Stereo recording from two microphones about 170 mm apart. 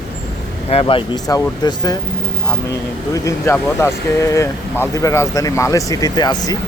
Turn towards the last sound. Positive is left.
turn(degrees=25)  # may be behind; listen again after turning